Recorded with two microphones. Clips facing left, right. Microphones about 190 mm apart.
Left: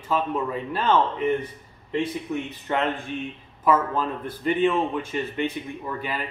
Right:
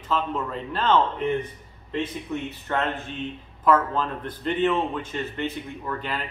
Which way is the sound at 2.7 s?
15° left (ahead or behind).